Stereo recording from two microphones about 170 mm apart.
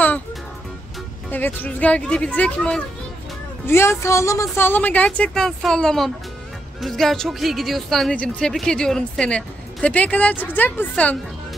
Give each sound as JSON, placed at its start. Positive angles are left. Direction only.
{"t": 1.3, "sound": "a woman's voice", "side_deg": 10}